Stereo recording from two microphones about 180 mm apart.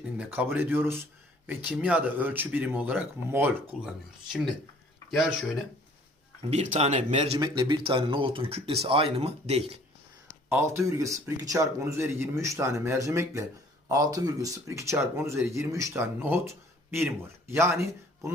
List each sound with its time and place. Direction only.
0.2 s speech: 10° right (ahead or behind)
6.5 s speech: 40° right (ahead or behind)
7.3 s speech: 25° right (ahead or behind)
10.5 s speech: 15° right (ahead or behind)